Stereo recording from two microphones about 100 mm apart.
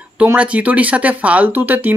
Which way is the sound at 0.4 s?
15° right (ahead or behind).